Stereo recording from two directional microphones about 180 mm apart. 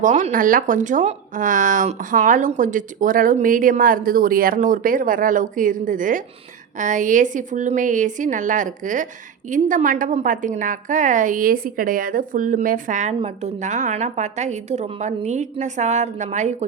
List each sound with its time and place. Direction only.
0.0 s a woman's voice: 45° right (ahead or behind)